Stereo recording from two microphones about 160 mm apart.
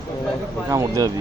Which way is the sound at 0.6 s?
20° right (ahead or behind).